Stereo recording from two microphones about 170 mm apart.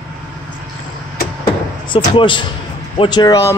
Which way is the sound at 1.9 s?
30° left (ahead or behind).